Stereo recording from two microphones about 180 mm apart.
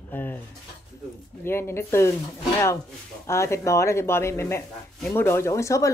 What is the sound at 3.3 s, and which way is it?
Speech, 15° left (ahead or behind).